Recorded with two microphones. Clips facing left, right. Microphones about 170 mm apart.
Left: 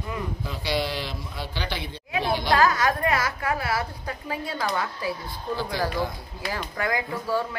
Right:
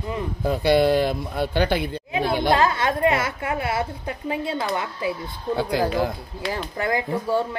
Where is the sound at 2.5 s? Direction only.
25° right (ahead or behind).